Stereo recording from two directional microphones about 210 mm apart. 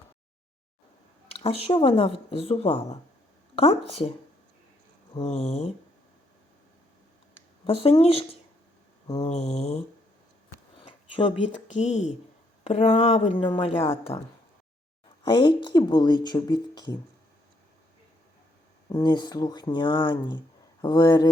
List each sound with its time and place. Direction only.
1.3 s speech: 25° left (ahead or behind)
5.1 s speech: 30° left (ahead or behind)
7.6 s speech: 25° left (ahead or behind)
11.4 s speech: 35° left (ahead or behind)
18.9 s speech: 20° left (ahead or behind)